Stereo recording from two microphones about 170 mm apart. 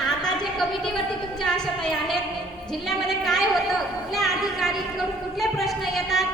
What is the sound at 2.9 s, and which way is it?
A man's voice, centre (ahead or behind).